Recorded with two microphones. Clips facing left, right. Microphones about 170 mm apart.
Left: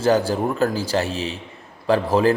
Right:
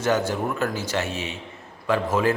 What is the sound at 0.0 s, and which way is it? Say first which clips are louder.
A man's voice: left 4 dB; 35° left (ahead or behind).